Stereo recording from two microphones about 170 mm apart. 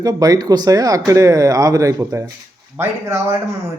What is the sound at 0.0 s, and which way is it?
Speech, 20° right (ahead or behind).